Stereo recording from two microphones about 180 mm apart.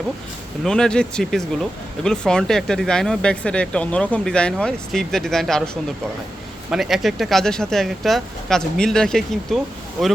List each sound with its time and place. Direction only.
0.6 s speech: 5° left (ahead or behind)